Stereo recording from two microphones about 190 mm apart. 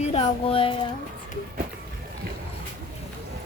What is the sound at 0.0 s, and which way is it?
Speech, 30° left (ahead or behind).